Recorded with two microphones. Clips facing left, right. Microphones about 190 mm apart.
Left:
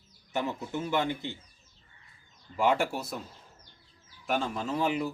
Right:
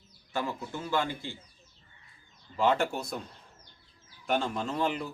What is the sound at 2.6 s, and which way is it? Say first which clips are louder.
Speech: even; 10° left (ahead or behind).